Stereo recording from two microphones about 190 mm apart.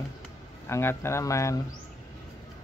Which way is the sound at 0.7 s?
15° left (ahead or behind).